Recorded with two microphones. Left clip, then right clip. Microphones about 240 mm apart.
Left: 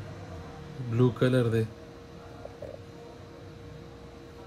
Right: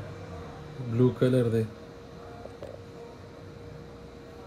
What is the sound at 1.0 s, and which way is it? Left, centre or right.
Speech, left.